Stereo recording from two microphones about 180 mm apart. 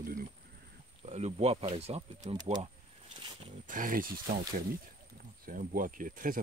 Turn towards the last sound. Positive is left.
turn(degrees=-50)  # may be behind; listen again after turning